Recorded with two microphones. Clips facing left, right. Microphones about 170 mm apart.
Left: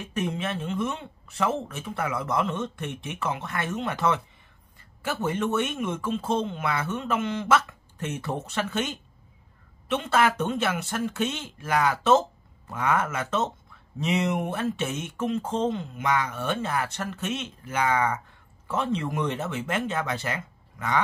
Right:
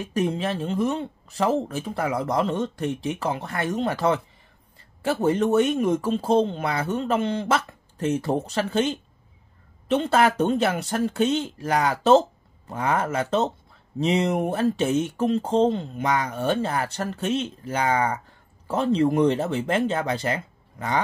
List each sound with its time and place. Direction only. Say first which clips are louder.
0.1 s speech: right 4 dB; 35° right (ahead or behind)